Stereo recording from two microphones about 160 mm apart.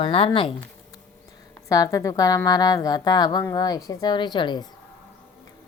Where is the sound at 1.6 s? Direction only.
20° left (ahead or behind).